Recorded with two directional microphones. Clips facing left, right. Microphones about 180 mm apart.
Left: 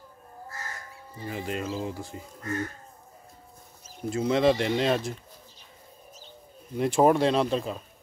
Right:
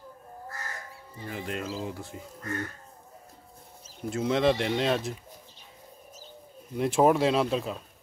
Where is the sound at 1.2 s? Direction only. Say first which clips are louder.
Left 2 dB; centre (ahead or behind).